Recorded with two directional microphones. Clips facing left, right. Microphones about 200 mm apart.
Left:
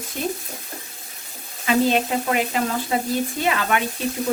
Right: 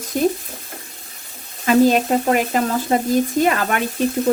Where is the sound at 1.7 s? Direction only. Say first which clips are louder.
Right 5 dB; 45° right (ahead or behind).